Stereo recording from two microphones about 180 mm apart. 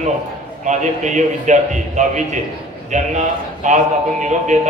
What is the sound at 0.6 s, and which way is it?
A man's voice, 40° right (ahead or behind).